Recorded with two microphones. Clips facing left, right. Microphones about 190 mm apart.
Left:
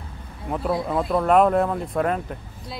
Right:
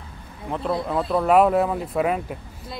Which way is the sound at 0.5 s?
5° left (ahead or behind).